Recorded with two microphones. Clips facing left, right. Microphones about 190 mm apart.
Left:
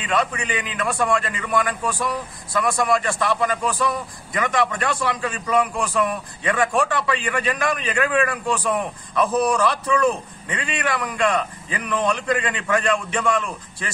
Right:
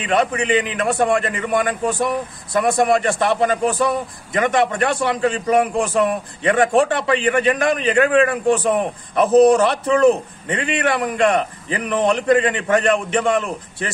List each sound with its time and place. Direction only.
0.0 s a man's voice: 25° right (ahead or behind)